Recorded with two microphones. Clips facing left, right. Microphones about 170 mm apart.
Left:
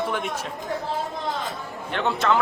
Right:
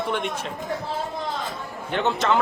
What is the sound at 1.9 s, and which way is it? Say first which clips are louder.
Speech: right 1 dB; centre (ahead or behind).